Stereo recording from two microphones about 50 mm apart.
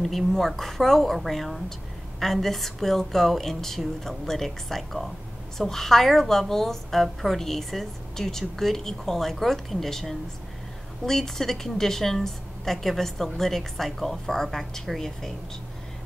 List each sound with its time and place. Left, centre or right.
0.0 s a woman's voice: centre